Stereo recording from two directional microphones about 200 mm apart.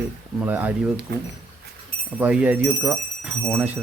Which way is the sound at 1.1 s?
55° right (ahead or behind).